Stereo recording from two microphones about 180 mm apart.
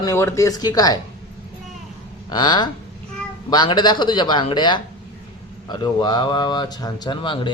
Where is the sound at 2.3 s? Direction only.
25° left (ahead or behind).